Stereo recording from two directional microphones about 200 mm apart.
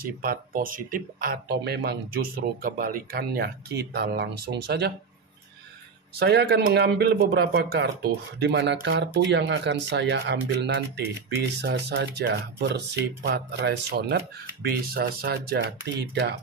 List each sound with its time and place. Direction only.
0.0 s speech: 45° right (ahead or behind)
6.1 s speech: 55° right (ahead or behind)